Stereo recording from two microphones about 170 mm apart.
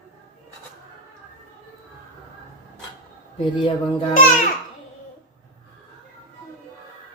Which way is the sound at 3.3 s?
30° left (ahead or behind).